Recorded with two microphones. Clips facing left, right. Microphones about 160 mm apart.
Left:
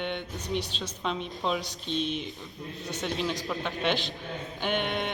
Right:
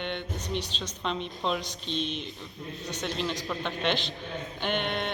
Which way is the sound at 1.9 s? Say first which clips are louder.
Left 2 dB; 50° left (ahead or behind).